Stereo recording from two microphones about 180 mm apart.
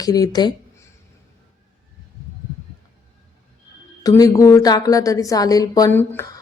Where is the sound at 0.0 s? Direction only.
20° left (ahead or behind).